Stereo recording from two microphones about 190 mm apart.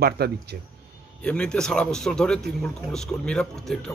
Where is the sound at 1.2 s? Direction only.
5° left (ahead or behind).